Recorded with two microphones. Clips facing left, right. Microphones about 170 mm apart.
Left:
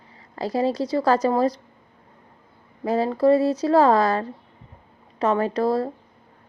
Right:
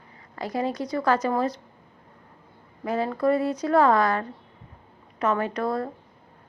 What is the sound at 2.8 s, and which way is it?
Speech, 30° left (ahead or behind).